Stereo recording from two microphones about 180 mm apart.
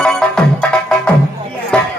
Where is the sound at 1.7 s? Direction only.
5° left (ahead or behind).